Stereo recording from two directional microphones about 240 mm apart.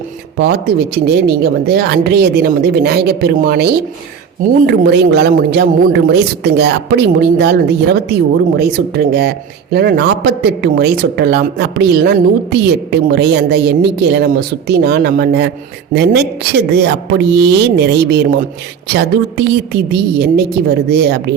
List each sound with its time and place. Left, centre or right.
0.3 s speech: right